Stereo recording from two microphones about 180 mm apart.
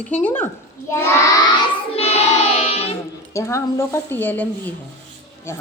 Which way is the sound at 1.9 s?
35° left (ahead or behind).